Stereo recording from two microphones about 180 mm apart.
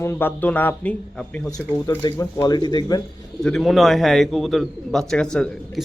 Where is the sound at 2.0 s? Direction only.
20° left (ahead or behind).